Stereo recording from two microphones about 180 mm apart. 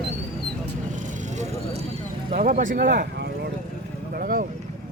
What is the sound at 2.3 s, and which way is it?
Speech, 45° right (ahead or behind).